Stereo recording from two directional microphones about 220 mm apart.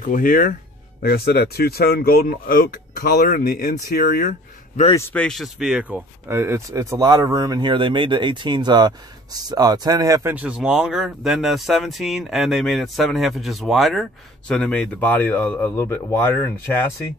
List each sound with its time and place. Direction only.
0.0 s speech: 40° left (ahead or behind)
4.3 s speech: 30° left (ahead or behind)
4.9 s speech: 10° left (ahead or behind)